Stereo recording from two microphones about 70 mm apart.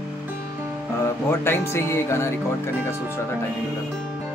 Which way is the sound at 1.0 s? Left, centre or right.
Left.